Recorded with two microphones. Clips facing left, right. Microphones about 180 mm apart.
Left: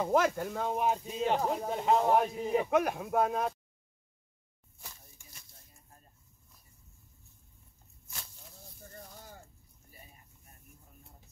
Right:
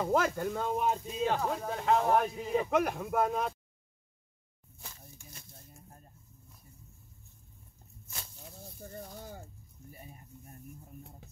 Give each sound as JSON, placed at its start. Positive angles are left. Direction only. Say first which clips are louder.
{"t": 0.0, "sound": "speech", "louder": "left 1 dB", "side_deg": 5}
{"t": 1.0, "sound": "speech", "louder": "left 1 dB", "side_deg": 15}
{"t": 2.7, "sound": "speech", "louder": "left 1 dB", "side_deg": 5}